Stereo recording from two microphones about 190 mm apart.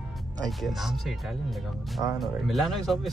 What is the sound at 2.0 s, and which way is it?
Speech, centre (ahead or behind).